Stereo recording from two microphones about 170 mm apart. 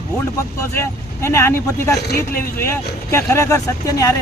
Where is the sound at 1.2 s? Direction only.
15° left (ahead or behind).